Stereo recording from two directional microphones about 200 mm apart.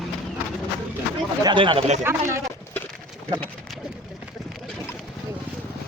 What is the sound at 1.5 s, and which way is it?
Speech, 25° right (ahead or behind).